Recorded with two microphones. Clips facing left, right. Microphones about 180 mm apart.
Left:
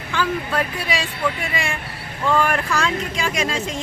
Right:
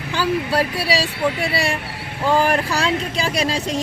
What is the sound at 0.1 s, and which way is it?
Speech, 35° right (ahead or behind).